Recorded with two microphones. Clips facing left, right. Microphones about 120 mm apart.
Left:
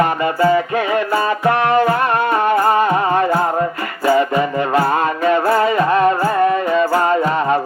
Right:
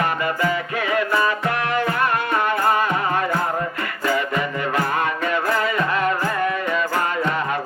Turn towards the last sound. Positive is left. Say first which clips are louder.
# left 7 dB
turn(degrees=30)  # may be behind; listen again after turning